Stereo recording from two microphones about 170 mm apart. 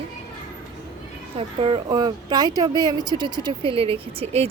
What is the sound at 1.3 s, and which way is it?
Speech, 35° right (ahead or behind).